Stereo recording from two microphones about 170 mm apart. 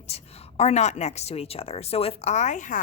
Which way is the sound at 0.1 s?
40° left (ahead or behind).